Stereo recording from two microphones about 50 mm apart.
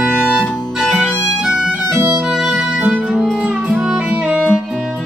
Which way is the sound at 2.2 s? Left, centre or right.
Centre.